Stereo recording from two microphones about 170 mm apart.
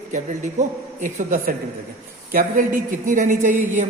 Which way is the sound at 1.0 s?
50° right (ahead or behind).